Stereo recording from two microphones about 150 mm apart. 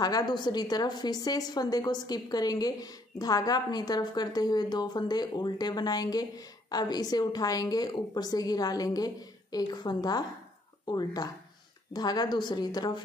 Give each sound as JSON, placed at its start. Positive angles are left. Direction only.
{"t": 0.0, "sound": "a woman's voice", "side_deg": 25}